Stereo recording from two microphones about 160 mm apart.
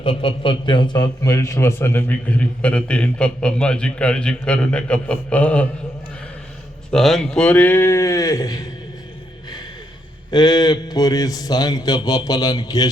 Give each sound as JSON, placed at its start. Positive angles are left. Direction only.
{"t": 0.0, "sound": "a man's voice", "side_deg": 30}
{"t": 6.9, "sound": "a man's voice", "side_deg": 0}
{"t": 10.3, "sound": "a man's voice", "side_deg": 25}